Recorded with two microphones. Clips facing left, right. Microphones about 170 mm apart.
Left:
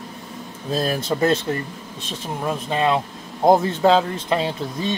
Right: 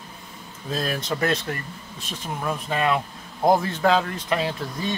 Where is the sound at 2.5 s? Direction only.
25° left (ahead or behind).